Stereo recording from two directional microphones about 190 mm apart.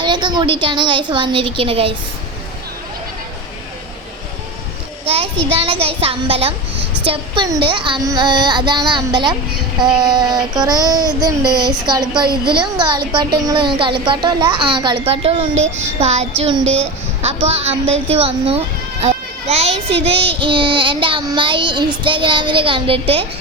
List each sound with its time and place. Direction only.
0.0 s a child's voice: 25° right (ahead or behind)
5.0 s a child's voice: 30° right (ahead or behind)